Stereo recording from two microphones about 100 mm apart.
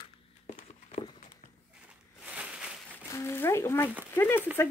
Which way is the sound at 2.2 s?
15° right (ahead or behind).